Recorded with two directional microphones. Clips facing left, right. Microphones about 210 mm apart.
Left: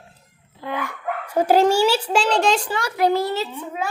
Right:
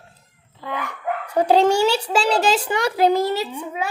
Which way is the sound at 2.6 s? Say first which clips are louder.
Right 2 dB; 20° right (ahead or behind).